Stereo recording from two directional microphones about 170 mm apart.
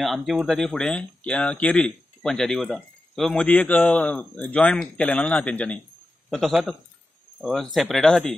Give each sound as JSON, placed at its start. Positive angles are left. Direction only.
{"t": 0.0, "sound": "speech", "side_deg": 0}